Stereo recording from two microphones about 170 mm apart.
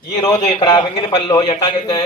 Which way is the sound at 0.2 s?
20° left (ahead or behind).